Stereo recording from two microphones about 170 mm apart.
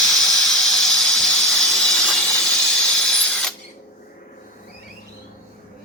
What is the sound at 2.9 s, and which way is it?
Printer, 5° left (ahead or behind).